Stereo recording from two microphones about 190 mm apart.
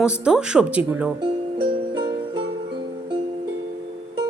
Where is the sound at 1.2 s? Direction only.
25° right (ahead or behind).